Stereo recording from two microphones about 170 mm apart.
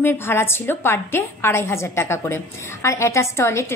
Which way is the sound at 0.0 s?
15° left (ahead or behind).